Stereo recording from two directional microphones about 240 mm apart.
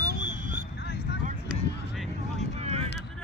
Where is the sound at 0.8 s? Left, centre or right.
Left.